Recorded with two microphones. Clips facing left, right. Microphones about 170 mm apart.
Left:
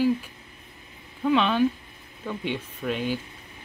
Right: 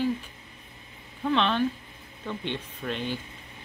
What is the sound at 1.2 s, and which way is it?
Speech, 5° left (ahead or behind).